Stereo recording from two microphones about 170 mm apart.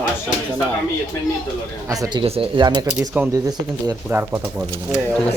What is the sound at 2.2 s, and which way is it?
Speech, 30° right (ahead or behind).